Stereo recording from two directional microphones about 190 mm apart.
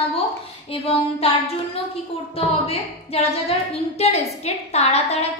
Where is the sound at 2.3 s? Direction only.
30° left (ahead or behind).